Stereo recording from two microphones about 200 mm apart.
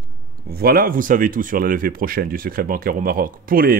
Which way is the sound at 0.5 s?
50° right (ahead or behind).